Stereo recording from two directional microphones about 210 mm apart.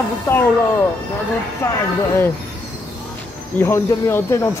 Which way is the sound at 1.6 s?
15° left (ahead or behind).